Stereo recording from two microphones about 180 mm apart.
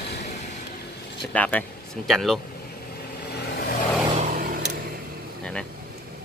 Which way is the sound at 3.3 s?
60° left (ahead or behind).